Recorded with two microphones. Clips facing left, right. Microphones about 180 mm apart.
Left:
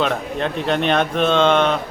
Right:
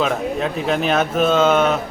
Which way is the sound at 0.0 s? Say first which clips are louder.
Right 1 dB; 5° right (ahead or behind).